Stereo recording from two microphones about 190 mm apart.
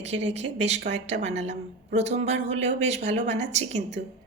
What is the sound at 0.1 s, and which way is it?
Speech, 70° right (ahead or behind).